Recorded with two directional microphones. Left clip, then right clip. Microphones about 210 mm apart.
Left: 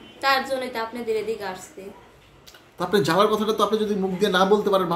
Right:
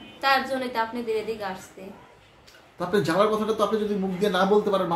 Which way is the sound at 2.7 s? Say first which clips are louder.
Left 3 dB; 30° left (ahead or behind).